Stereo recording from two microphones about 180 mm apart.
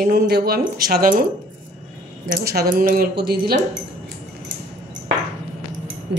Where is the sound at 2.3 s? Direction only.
60° right (ahead or behind).